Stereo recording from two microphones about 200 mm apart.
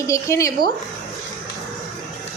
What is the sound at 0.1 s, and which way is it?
Speech, 15° left (ahead or behind).